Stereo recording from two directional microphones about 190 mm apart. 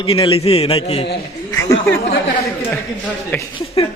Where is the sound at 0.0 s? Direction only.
30° left (ahead or behind).